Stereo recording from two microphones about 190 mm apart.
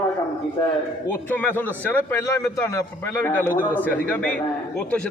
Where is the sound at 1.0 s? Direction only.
10° left (ahead or behind).